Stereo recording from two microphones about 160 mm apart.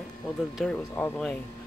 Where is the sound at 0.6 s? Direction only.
Centre (ahead or behind).